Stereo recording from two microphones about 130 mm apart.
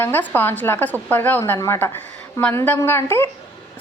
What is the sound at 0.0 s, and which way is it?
A woman's voice, 15° left (ahead or behind).